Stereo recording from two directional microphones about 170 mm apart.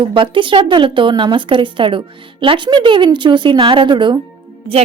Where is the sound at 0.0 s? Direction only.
30° right (ahead or behind).